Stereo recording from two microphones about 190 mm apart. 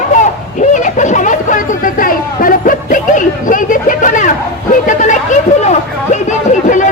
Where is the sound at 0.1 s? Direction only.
40° left (ahead or behind).